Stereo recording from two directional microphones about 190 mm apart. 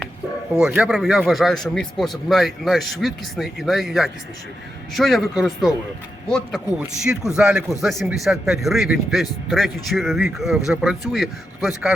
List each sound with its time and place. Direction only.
0.7 s speech: 5° right (ahead or behind)